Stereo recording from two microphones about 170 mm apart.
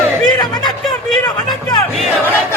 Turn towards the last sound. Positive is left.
turn(degrees=25)  # may be behind; listen again after turning